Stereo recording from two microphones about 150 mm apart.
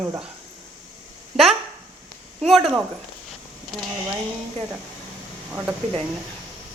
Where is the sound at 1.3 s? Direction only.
Centre (ahead or behind).